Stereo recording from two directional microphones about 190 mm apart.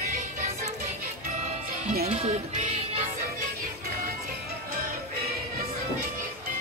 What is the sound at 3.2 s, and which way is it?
Music, 45° right (ahead or behind).